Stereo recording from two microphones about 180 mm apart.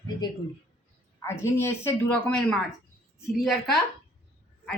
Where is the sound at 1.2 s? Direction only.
15° left (ahead or behind).